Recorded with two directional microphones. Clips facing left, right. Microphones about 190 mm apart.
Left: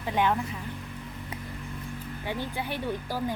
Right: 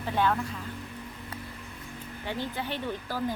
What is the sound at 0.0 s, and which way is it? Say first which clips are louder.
Speech: left 1 dB; 15° left (ahead or behind).